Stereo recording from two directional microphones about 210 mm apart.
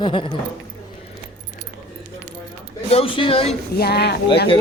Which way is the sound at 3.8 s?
50° left (ahead or behind).